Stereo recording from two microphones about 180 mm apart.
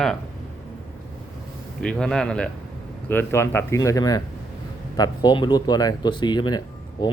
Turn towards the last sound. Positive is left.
turn(degrees=25)  # may be behind; listen again after turning